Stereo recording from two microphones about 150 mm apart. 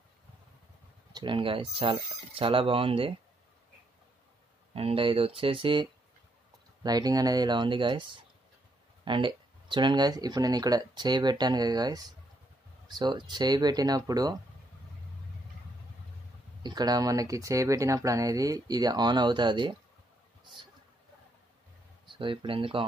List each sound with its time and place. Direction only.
1.1 s speech: 35° right (ahead or behind)
4.7 s speech: 40° right (ahead or behind)
9.0 s speech: 35° right (ahead or behind)
16.6 s speech: 25° right (ahead or behind)
22.0 s speech: 35° right (ahead or behind)